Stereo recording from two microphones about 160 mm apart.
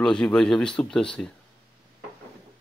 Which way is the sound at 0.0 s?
5° left (ahead or behind).